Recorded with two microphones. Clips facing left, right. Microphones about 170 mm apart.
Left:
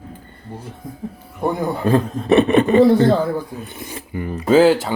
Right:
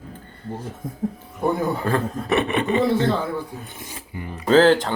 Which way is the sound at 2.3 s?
40° left (ahead or behind).